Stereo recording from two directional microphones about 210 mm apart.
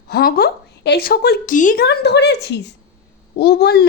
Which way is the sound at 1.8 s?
50° left (ahead or behind).